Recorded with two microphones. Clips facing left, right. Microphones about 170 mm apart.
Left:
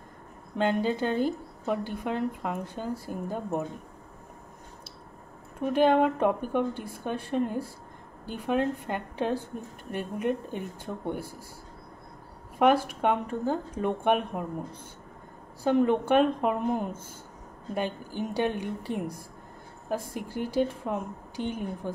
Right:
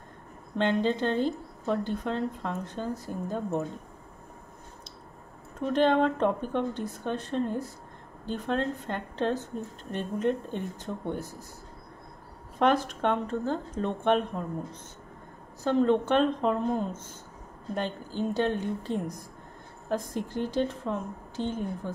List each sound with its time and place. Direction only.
0.6 s a woman's voice: 10° left (ahead or behind)
5.6 s a woman's voice: 10° left (ahead or behind)
12.5 s a woman's voice: 10° left (ahead or behind)